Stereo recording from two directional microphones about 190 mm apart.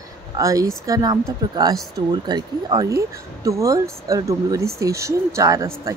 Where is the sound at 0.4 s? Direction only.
15° right (ahead or behind).